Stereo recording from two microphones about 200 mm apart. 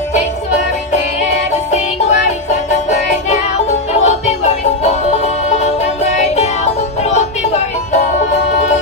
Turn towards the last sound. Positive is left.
turn(degrees=35)  # may be behind; listen again after turning